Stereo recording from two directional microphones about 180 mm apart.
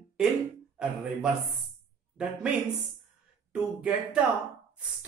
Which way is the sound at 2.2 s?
5° right (ahead or behind).